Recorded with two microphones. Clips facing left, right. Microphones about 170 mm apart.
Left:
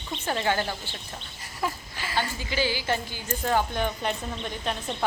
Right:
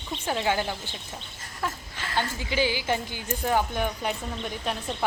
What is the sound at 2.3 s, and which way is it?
Speech, 15° right (ahead or behind).